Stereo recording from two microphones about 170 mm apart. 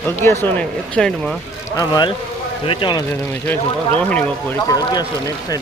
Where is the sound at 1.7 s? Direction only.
25° left (ahead or behind).